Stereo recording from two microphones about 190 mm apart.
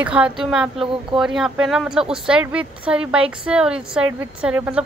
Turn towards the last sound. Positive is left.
turn(degrees=-5)  # may be behind; listen again after turning